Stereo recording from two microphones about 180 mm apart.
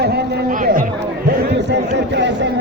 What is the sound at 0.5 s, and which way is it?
Chatter, 50° right (ahead or behind).